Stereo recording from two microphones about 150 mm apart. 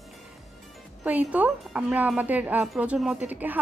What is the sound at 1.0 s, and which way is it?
A woman's voice, 10° right (ahead or behind).